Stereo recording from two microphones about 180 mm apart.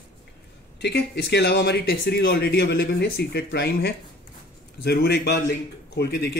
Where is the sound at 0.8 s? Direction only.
70° left (ahead or behind).